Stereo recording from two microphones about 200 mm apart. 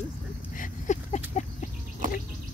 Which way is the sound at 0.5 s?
40° left (ahead or behind).